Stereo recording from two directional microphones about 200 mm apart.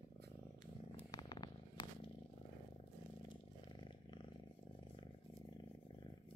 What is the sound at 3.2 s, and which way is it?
Purr, 25° left (ahead or behind).